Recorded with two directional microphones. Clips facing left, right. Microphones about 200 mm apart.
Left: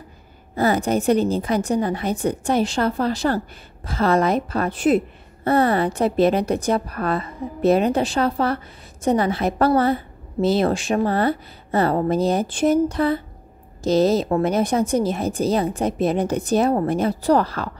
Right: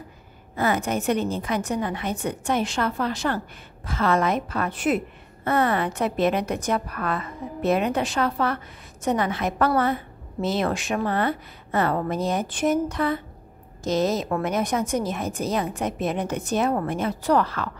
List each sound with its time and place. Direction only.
0.6 s a woman's voice: 35° left (ahead or behind)